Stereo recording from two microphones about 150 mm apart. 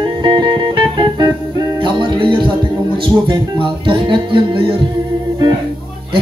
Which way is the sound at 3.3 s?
35° right (ahead or behind).